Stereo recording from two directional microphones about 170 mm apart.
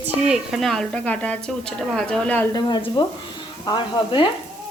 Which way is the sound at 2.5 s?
25° left (ahead or behind).